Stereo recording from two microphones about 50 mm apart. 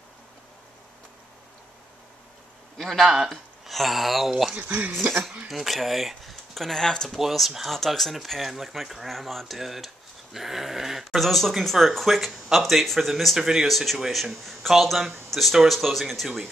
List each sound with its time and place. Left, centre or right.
2.8 s speech: centre
4.6 s speech: right
5.5 s speech: centre
7.1 s speech: centre